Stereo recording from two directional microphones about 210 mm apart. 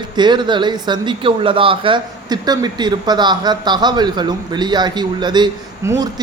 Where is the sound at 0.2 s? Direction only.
20° right (ahead or behind).